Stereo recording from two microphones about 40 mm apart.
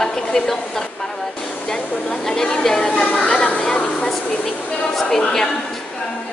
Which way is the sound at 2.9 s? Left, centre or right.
Left.